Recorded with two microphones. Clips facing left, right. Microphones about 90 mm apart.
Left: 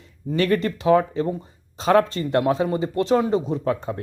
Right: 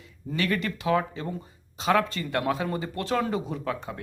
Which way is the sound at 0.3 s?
40° left (ahead or behind).